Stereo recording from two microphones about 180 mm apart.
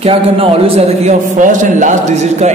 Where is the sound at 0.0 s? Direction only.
30° right (ahead or behind).